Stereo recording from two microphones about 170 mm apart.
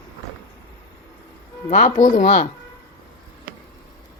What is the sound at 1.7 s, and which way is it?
Speech, 45° left (ahead or behind).